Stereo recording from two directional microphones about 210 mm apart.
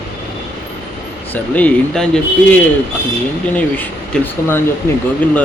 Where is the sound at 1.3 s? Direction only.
5° left (ahead or behind).